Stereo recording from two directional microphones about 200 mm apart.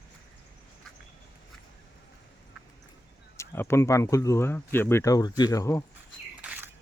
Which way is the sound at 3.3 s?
10° left (ahead or behind).